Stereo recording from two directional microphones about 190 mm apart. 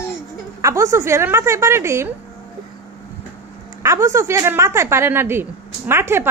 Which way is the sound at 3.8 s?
15° right (ahead or behind).